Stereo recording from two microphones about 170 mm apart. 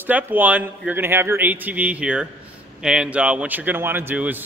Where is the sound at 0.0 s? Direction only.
10° right (ahead or behind).